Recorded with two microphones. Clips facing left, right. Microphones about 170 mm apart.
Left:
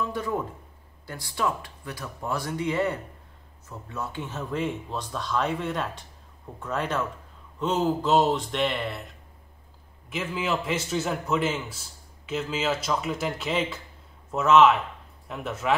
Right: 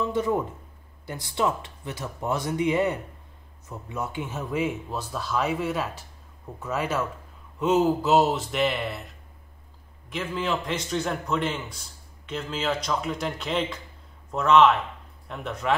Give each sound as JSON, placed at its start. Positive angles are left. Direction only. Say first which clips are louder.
{"t": 0.0, "sound": "a man's voice", "louder": "right 4 dB", "side_deg": -20}